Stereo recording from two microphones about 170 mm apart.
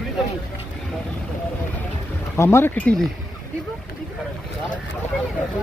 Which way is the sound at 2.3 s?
15° left (ahead or behind).